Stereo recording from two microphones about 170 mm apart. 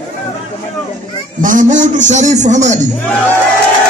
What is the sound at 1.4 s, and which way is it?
Speech, 50° right (ahead or behind).